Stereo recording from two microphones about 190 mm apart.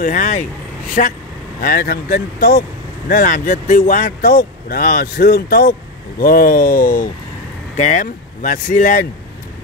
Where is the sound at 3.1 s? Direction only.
45° left (ahead or behind).